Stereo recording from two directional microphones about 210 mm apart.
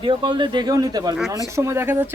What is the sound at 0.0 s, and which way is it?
Speech, 20° right (ahead or behind).